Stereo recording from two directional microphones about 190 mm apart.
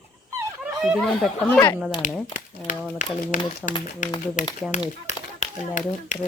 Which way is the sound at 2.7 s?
45° left (ahead or behind).